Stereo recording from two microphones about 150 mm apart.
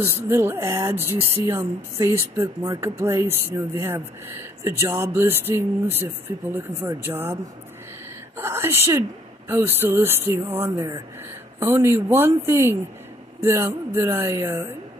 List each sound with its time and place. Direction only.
0.0 s speech: 15° right (ahead or behind)
8.4 s speech: 15° right (ahead or behind)